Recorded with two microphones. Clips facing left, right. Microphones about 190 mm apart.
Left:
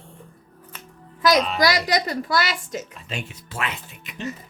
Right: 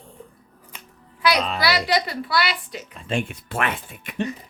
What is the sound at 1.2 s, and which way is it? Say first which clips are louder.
A woman's voice: left 3 dB; 45° left (ahead or behind).